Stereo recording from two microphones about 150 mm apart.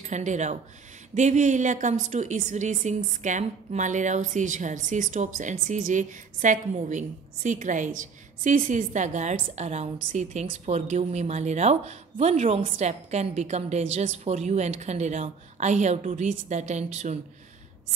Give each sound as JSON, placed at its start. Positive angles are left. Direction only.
{"t": 0.0, "sound": "a woman's voice", "side_deg": -50}